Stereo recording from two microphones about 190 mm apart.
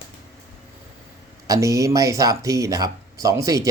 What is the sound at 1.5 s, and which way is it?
Speech, 15° right (ahead or behind).